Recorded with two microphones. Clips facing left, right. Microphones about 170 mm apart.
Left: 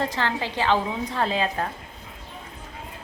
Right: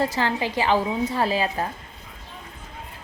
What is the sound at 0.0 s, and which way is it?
A woman's voice, 10° right (ahead or behind).